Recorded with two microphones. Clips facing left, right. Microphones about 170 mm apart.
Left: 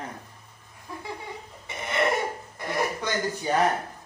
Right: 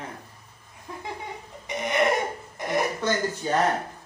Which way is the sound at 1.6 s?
15° right (ahead or behind).